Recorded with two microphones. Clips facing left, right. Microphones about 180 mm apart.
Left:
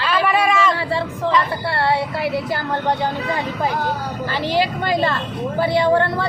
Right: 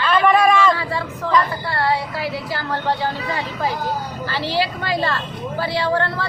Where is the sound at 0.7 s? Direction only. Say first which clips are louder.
Left 3 dB; 25° left (ahead or behind).